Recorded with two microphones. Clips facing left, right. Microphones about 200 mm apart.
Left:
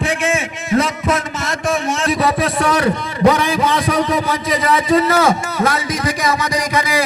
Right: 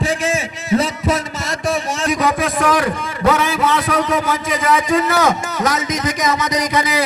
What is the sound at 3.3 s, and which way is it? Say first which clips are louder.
A man's voice: even; 5° right (ahead or behind).